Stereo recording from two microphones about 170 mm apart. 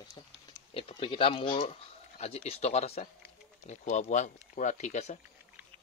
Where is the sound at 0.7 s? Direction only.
30° left (ahead or behind).